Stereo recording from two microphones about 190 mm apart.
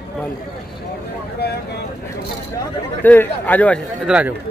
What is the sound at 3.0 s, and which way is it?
Speech, 10° left (ahead or behind).